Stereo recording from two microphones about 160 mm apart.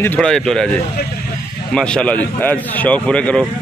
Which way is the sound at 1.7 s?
5° left (ahead or behind).